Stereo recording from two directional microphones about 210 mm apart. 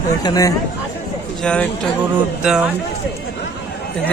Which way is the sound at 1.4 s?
5° left (ahead or behind).